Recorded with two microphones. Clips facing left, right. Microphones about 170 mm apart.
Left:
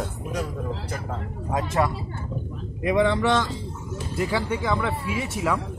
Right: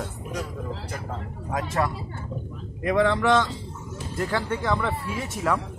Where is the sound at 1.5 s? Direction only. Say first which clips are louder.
Left 2 dB; 20° left (ahead or behind).